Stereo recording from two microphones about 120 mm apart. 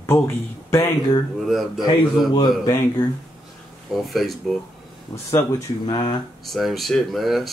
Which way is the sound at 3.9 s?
Centre (ahead or behind).